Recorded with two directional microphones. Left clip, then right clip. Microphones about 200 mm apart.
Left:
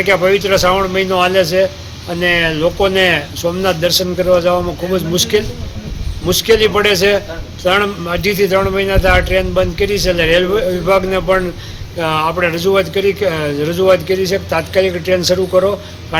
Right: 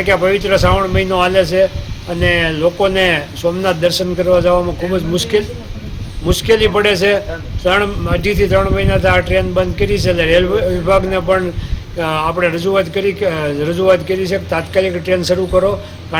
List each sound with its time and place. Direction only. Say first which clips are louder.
0.0 s a man's voice: left 1 dB; centre (ahead or behind)